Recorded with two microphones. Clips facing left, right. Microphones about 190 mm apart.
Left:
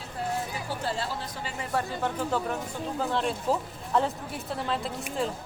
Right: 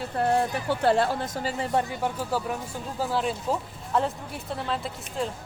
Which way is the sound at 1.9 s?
10° right (ahead or behind).